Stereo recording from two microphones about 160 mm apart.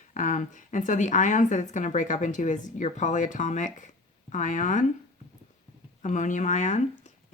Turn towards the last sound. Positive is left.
turn(degrees=50)  # may be behind; listen again after turning